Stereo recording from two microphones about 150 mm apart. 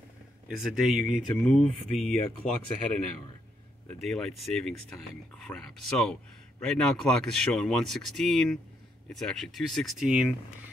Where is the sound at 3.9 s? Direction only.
Centre (ahead or behind).